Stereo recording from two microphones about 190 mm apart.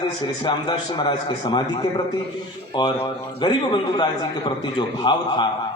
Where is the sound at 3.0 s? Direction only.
25° left (ahead or behind).